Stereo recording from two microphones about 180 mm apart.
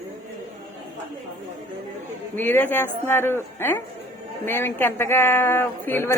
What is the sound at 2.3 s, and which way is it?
A woman's voice, 10° left (ahead or behind).